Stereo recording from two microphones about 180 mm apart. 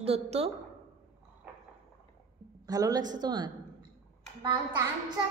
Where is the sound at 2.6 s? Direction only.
20° right (ahead or behind).